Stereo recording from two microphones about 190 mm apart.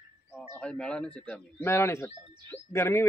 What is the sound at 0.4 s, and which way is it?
Speech, 5° left (ahead or behind).